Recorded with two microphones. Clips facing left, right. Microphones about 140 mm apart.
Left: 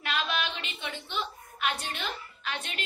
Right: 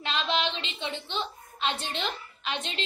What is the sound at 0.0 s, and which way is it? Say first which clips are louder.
A woman's voice: right 3 dB; 25° right (ahead or behind).